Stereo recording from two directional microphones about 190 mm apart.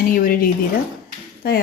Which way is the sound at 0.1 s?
50° left (ahead or behind).